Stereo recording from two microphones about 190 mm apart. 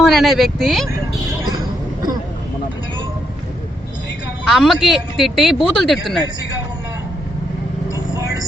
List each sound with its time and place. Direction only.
0.0 s a man's voice: centre (ahead or behind)
4.4 s a man's voice: centre (ahead or behind)
7.9 s vehicle: 20° right (ahead or behind)